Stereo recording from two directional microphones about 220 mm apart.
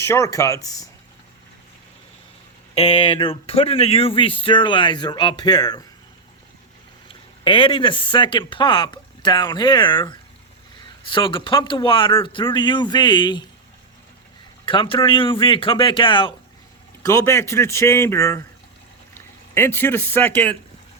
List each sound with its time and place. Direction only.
0.0 s speech: 15° left (ahead or behind)
2.7 s speech: 25° left (ahead or behind)
7.1 s speech: 20° left (ahead or behind)
14.6 s speech: 20° left (ahead or behind); by 20.6 s 5° left (ahead or behind)